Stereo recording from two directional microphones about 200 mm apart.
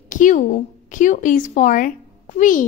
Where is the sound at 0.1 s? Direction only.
40° left (ahead or behind).